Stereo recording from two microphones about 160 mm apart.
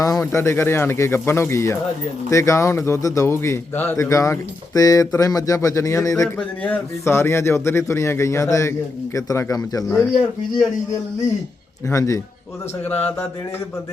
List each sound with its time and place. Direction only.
0.0 s a man's voice: 20° left (ahead or behind)
11.9 s a man's voice: 20° left (ahead or behind)